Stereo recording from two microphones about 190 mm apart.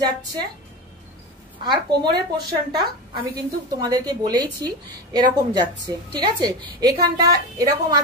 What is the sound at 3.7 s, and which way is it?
A woman's voice, 20° right (ahead or behind).